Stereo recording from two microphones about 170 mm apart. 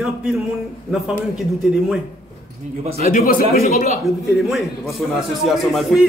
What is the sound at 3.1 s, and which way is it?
Speech, 55° left (ahead or behind).